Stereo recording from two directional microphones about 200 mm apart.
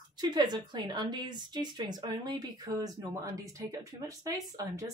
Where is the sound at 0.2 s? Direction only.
20° right (ahead or behind).